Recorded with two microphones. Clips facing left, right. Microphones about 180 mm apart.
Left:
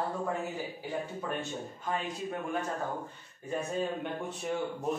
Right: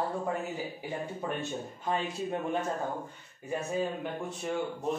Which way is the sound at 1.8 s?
25° right (ahead or behind).